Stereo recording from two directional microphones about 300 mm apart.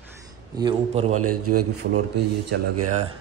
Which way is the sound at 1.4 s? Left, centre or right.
Right.